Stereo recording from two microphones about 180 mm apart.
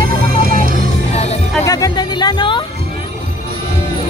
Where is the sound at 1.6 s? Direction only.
20° left (ahead or behind).